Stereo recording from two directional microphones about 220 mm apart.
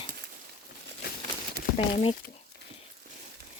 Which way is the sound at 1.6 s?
45° right (ahead or behind).